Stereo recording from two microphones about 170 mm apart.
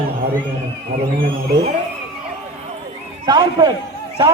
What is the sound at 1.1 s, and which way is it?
Speech, 55° right (ahead or behind).